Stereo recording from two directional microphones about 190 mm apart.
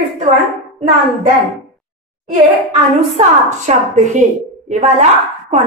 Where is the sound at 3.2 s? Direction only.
40° right (ahead or behind).